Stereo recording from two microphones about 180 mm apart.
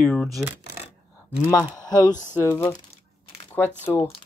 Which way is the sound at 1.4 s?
15° left (ahead or behind).